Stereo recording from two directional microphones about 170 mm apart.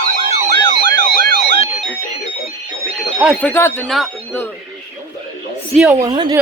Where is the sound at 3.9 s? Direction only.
Centre (ahead or behind).